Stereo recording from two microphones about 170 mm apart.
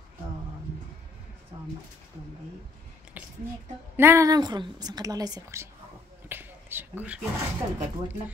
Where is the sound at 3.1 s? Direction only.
10° right (ahead or behind).